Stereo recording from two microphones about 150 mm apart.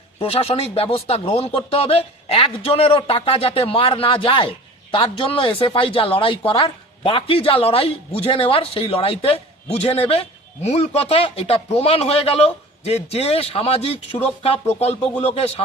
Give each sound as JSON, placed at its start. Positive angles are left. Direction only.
{"t": 0.2, "sound": "speech", "side_deg": 40}